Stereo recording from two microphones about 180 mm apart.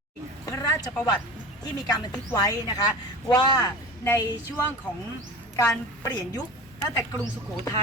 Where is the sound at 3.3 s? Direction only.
20° left (ahead or behind).